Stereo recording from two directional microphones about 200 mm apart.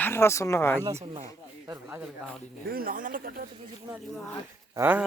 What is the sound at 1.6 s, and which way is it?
Speech, 15° right (ahead or behind).